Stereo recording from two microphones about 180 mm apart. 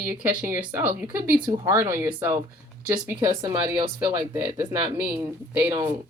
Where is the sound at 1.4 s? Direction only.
20° right (ahead or behind).